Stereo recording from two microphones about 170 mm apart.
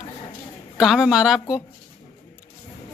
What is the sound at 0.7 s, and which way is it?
Speech, 5° right (ahead or behind).